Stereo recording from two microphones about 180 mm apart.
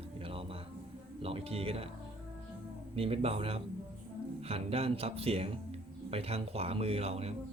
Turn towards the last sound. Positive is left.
turn(degrees=-35)  # may be behind; listen again after turning